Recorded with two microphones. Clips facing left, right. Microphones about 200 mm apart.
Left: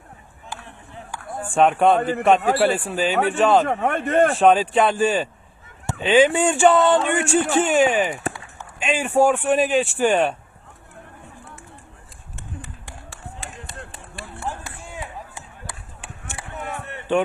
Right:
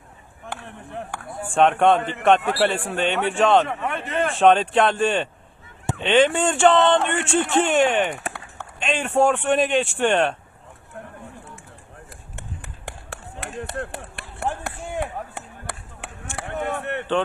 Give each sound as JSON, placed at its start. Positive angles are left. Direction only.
{"t": 0.4, "sound": "chop", "side_deg": -60}
{"t": 1.5, "sound": "a man's voice", "side_deg": 5}
{"t": 3.7, "sound": "a man's voice", "side_deg": 50}
{"t": 4.4, "sound": "a man's voice", "side_deg": 5}
{"t": 12.4, "sound": "a sound", "side_deg": -60}